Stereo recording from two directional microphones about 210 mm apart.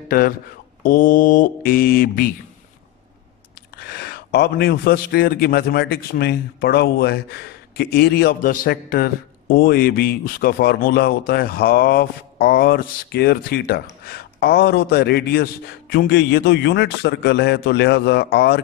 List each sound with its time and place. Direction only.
0.8 s a man's voice: 40° left (ahead or behind)
3.7 s a man's voice: 50° left (ahead or behind)